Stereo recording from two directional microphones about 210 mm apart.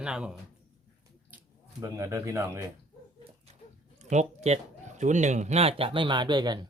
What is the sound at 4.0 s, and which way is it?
Speech, 35° right (ahead or behind).